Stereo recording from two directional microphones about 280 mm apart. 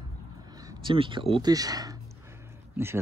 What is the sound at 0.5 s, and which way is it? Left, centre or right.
Speech, centre.